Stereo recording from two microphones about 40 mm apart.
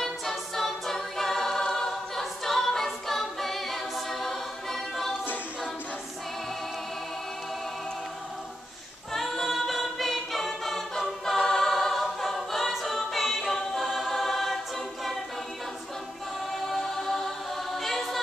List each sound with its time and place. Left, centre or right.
0.0 s a capella: centre
9.1 s a capella: centre
11.4 s choir: centre
16.5 s choir: centre